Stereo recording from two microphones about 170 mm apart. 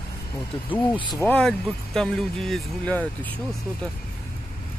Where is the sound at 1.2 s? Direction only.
10° left (ahead or behind).